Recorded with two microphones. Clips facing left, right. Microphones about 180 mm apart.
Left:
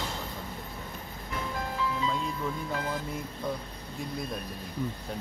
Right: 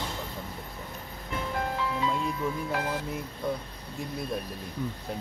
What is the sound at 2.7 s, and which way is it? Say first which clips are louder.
Speech: right 2 dB; 70° right (ahead or behind).